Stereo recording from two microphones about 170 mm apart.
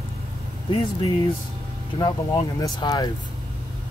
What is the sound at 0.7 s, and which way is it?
Speech, 30° left (ahead or behind).